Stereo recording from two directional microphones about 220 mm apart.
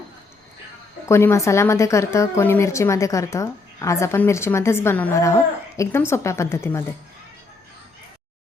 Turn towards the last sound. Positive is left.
turn(degrees=10)  # may be behind; listen again after turning